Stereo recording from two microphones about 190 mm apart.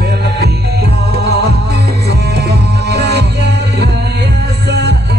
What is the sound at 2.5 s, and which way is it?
Music, 60° right (ahead or behind).